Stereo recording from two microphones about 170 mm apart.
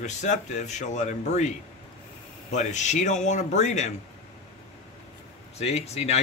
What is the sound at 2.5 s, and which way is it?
Speech, 45° left (ahead or behind).